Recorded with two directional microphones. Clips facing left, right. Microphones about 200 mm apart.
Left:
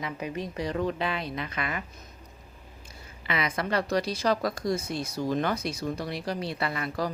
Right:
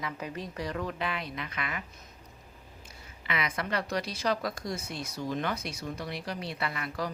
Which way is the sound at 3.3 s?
35° left (ahead or behind).